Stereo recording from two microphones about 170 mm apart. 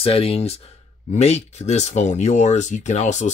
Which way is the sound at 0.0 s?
35° left (ahead or behind).